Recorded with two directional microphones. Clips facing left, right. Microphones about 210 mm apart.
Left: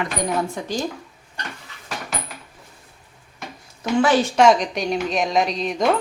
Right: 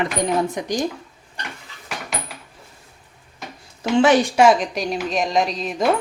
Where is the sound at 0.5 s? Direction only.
15° right (ahead or behind).